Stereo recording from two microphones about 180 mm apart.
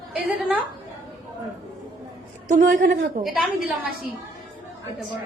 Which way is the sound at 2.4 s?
45° right (ahead or behind).